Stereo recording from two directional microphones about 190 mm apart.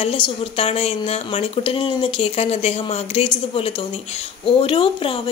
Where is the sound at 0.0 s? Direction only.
30° left (ahead or behind).